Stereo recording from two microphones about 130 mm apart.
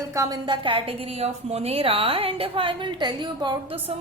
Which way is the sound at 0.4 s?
40° right (ahead or behind).